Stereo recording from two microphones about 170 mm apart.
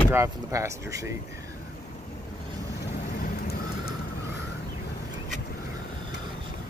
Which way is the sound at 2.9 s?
60° left (ahead or behind).